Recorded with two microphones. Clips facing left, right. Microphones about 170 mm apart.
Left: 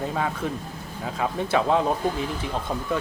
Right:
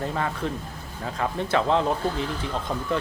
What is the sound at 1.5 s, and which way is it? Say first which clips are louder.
Speech: left 1 dB; 10° left (ahead or behind).